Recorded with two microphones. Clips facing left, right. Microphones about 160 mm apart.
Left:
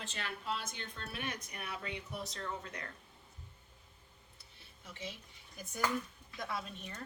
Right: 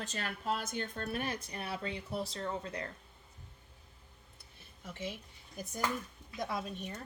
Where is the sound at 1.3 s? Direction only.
30° right (ahead or behind).